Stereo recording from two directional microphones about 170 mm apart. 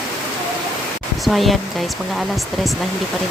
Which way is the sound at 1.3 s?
Centre (ahead or behind).